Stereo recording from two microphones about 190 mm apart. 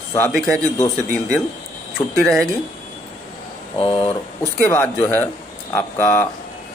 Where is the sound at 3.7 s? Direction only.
30° left (ahead or behind).